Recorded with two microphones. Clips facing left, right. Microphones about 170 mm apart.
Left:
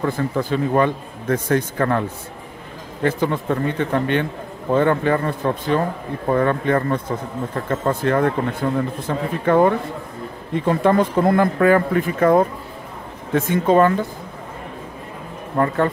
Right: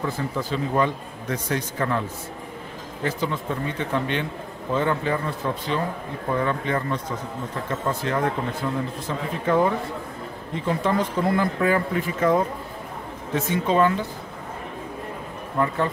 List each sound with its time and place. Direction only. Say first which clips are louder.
0.0 s a man's voice: left 6 dB; 55° left (ahead or behind)
15.5 s speech: left 5 dB; 50° left (ahead or behind)